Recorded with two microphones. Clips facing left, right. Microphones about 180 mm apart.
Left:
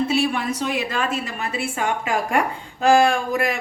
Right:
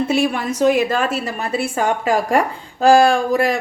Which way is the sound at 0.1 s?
45° right (ahead or behind).